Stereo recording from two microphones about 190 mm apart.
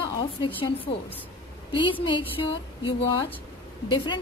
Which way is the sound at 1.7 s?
25° left (ahead or behind).